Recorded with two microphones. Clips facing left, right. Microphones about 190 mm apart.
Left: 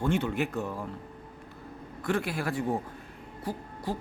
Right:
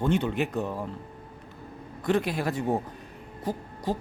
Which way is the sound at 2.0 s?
20° right (ahead or behind).